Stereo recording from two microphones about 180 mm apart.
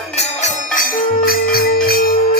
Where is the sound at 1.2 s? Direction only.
55° left (ahead or behind).